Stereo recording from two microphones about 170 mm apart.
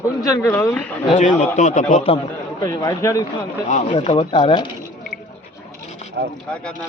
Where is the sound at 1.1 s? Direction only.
45° left (ahead or behind).